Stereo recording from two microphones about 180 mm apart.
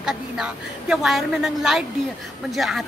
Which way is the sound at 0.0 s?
5° right (ahead or behind).